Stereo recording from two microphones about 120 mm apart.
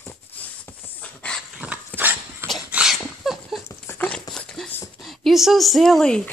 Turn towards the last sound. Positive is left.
turn(degrees=5)  # may be behind; listen again after turning